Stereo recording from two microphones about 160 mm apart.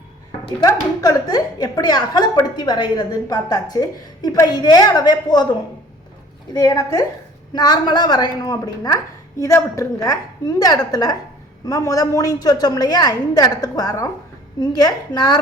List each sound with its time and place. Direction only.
0.6 s a woman's voice: 25° left (ahead or behind)
6.5 s a woman's voice: 25° left (ahead or behind)